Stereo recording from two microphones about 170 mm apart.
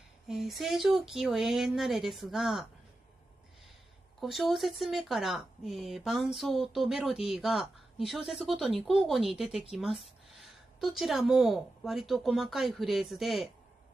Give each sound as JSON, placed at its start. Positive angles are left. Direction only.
{"t": 0.3, "sound": "speech", "side_deg": 0}
{"t": 4.2, "sound": "speech", "side_deg": 0}